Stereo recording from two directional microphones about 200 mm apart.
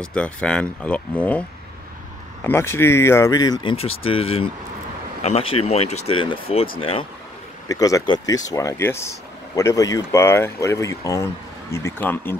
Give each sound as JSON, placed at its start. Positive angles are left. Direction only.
{"t": 0.0, "sound": "speech", "side_deg": 5}
{"t": 2.4, "sound": "speech", "side_deg": 10}
{"t": 7.6, "sound": "speech", "side_deg": 15}